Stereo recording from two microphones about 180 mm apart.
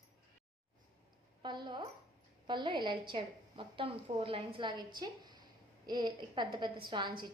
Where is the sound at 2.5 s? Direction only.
25° right (ahead or behind).